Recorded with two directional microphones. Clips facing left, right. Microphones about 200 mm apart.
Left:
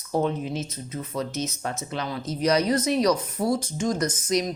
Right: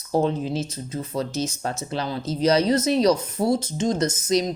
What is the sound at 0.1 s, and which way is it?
Speech, 30° right (ahead or behind).